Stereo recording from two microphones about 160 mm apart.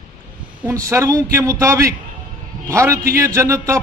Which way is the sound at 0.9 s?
20° right (ahead or behind).